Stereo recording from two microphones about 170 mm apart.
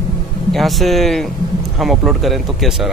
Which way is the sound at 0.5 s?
Centre (ahead or behind).